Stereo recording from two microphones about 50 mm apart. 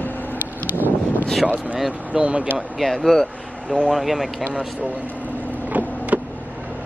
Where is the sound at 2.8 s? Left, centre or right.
Centre.